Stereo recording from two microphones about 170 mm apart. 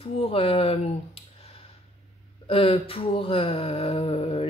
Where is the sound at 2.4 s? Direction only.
35° left (ahead or behind).